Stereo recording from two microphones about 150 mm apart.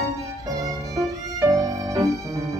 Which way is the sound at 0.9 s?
20° right (ahead or behind).